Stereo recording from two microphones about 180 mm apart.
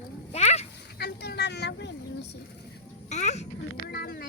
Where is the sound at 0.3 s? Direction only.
40° left (ahead or behind).